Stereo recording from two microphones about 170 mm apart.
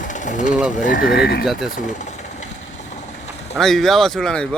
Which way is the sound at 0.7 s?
50° left (ahead or behind).